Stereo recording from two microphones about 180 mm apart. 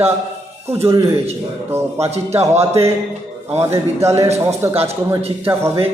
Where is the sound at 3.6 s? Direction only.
15° right (ahead or behind).